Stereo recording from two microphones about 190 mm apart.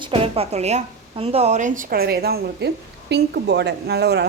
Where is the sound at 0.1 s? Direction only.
30° right (ahead or behind).